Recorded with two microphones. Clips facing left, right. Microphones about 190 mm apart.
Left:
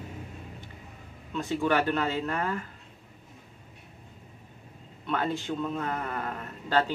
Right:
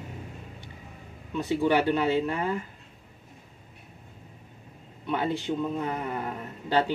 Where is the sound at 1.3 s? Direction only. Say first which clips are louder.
Right 2 dB; 15° right (ahead or behind).